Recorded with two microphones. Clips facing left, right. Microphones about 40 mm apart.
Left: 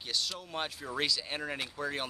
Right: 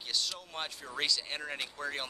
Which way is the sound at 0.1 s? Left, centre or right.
Centre.